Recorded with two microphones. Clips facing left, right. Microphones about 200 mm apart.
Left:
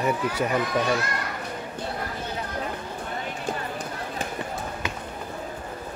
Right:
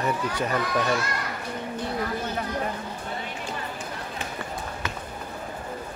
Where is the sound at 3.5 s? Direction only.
50° left (ahead or behind).